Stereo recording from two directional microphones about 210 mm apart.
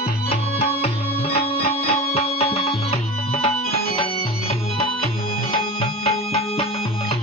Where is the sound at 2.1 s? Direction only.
30° left (ahead or behind).